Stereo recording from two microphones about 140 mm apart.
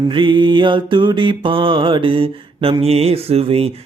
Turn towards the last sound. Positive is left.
turn(degrees=-45)  # may be behind; listen again after turning